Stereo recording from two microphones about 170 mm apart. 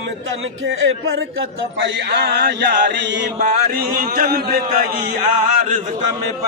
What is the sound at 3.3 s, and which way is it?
A man's voice, 50° right (ahead or behind).